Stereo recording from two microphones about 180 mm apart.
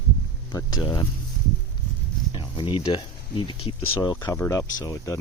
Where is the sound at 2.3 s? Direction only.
25° left (ahead or behind).